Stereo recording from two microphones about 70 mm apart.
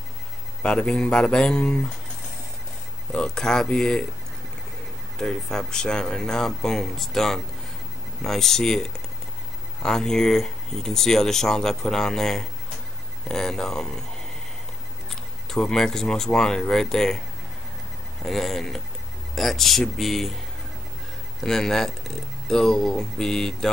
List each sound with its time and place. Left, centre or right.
0.6 s speech: centre
3.1 s speech: centre
5.2 s speech: centre
9.8 s speech: centre
15.0 s speech: centre
18.2 s speech: centre
21.4 s speech: centre